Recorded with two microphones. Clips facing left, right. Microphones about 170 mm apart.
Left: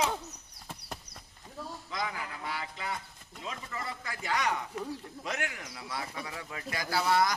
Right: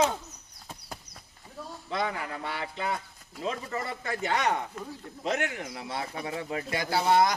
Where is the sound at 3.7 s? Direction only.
45° right (ahead or behind).